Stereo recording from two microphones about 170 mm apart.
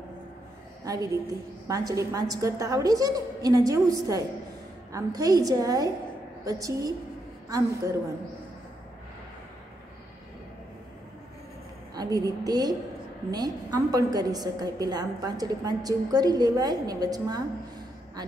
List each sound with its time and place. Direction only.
1.7 s a woman's voice: 20° right (ahead or behind)
11.9 s a woman's voice: 20° right (ahead or behind)